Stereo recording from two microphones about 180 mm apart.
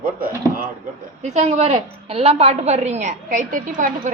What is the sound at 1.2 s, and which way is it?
A woman's voice, 40° right (ahead or behind).